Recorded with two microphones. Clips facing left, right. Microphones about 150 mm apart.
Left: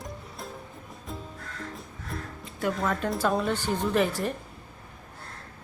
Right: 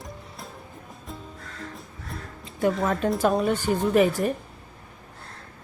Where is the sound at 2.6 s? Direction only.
25° right (ahead or behind).